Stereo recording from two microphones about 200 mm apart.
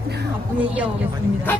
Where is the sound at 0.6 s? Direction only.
5° right (ahead or behind).